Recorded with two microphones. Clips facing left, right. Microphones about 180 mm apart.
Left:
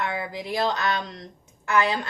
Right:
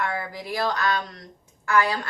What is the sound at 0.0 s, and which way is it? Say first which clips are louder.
Speech: even; 20° left (ahead or behind).